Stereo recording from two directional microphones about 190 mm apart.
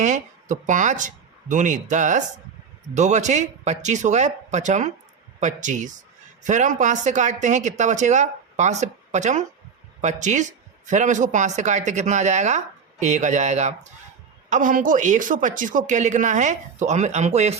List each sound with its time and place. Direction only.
0.0 s speech: 40° right (ahead or behind)